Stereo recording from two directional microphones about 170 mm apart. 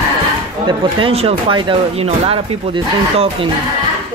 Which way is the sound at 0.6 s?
35° right (ahead or behind).